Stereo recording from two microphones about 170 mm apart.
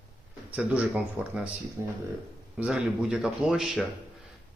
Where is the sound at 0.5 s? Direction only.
10° right (ahead or behind).